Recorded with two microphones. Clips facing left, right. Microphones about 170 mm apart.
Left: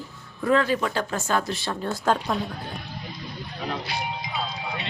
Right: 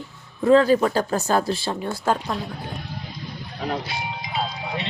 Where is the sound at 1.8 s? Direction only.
10° right (ahead or behind).